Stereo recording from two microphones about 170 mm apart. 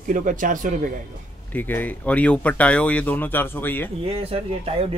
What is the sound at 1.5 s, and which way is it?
Speech, 10° left (ahead or behind).